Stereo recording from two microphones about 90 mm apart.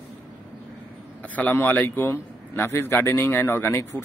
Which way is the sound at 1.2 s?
15° left (ahead or behind).